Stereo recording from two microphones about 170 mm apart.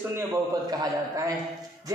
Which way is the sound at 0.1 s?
15° right (ahead or behind).